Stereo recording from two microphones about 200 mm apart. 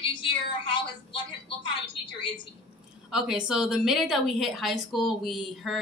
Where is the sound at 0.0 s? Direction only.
25° left (ahead or behind).